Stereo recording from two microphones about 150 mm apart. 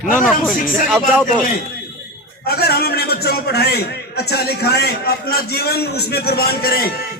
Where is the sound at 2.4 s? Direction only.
90° left.